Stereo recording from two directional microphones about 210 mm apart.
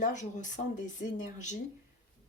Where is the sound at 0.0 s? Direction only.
35° left (ahead or behind).